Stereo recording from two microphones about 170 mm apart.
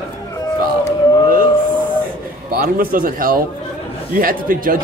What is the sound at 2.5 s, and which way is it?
A man's voice, 55° right (ahead or behind).